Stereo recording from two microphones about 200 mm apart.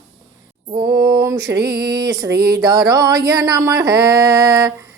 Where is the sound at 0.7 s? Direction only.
20° right (ahead or behind).